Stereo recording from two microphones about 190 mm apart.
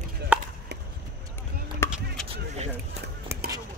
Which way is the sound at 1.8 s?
10° left (ahead or behind).